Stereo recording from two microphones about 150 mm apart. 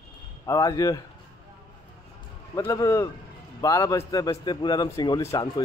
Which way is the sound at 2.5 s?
20° left (ahead or behind).